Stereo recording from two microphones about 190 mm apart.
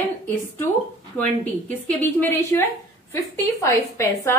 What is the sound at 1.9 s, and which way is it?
A woman's voice, 10° left (ahead or behind).